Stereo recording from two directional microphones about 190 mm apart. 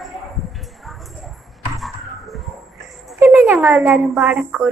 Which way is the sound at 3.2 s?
10° right (ahead or behind).